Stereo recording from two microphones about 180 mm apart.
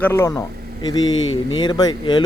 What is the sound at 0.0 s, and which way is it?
Speech, 15° left (ahead or behind).